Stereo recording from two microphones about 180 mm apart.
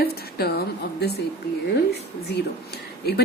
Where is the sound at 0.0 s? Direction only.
60° left (ahead or behind).